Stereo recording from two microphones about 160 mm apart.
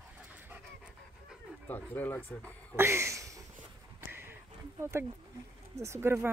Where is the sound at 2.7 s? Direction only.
15° right (ahead or behind).